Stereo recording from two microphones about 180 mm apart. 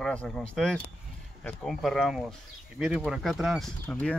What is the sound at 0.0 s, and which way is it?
Speech, 5° left (ahead or behind).